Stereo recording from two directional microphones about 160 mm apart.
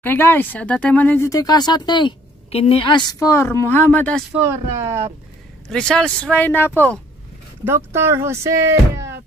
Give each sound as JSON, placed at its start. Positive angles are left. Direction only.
{"t": 0.0, "sound": "a woman's voice", "side_deg": 10}
{"t": 4.3, "sound": "speech", "side_deg": -15}
{"t": 5.7, "sound": "speech", "side_deg": 5}
{"t": 7.6, "sound": "speech", "side_deg": -15}